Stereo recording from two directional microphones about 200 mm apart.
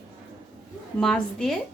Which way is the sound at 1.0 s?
Centre (ahead or behind).